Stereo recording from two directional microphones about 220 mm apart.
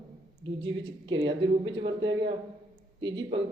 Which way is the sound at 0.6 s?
20° right (ahead or behind).